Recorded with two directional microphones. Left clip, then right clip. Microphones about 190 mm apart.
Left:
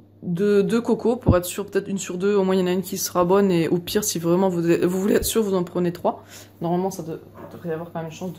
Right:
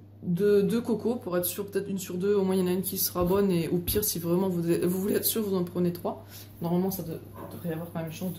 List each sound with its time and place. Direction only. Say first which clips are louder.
0.3 s speech: left 4 dB; 50° left (ahead or behind)